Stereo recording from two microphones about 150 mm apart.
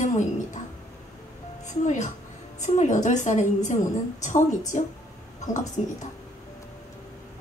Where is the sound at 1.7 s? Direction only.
55° left (ahead or behind).